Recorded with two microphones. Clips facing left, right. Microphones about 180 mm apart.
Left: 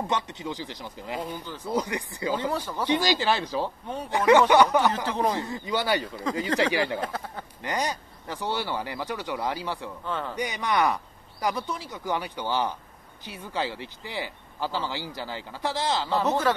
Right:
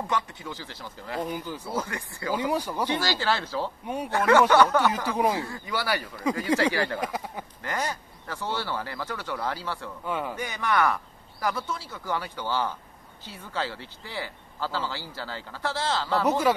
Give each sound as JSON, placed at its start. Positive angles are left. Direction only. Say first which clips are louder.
{"t": 0.0, "sound": "speech", "louder": "left 1 dB", "side_deg": 20}
{"t": 1.2, "sound": "speech", "louder": "right 3 dB", "side_deg": -10}
{"t": 1.7, "sound": "speech", "louder": "left 6 dB", "side_deg": 15}
{"t": 2.3, "sound": "speech", "louder": "right 3 dB", "side_deg": -10}
{"t": 2.9, "sound": "speech", "louder": "left 5 dB", "side_deg": 15}
{"t": 3.8, "sound": "speech", "louder": "right 2 dB", "side_deg": -10}
{"t": 4.1, "sound": "speech", "louder": "left 1 dB", "side_deg": 15}
{"t": 5.0, "sound": "speech", "louder": "right 1 dB", "side_deg": -10}
{"t": 5.4, "sound": "speech", "louder": "left 3 dB", "side_deg": 20}
{"t": 7.0, "sound": "speech", "louder": "right 1 dB", "side_deg": -10}
{"t": 7.6, "sound": "speech", "louder": "left 2 dB", "side_deg": 15}
{"t": 10.0, "sound": "speech", "louder": "right 2 dB", "side_deg": -10}
{"t": 10.3, "sound": "speech", "louder": "left 2 dB", "side_deg": 15}
{"t": 16.3, "sound": "speech", "louder": "right 2 dB", "side_deg": -10}